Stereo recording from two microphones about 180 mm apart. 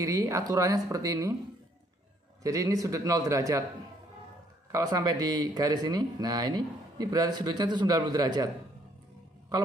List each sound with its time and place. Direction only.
0.0 s speech: 20° right (ahead or behind)
2.4 s a man's voice: 20° right (ahead or behind)
4.7 s speech: 20° right (ahead or behind)